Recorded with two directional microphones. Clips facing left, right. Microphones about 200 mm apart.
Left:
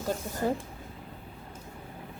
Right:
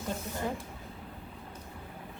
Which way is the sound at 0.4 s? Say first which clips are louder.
Left 7 dB; 40° left (ahead or behind).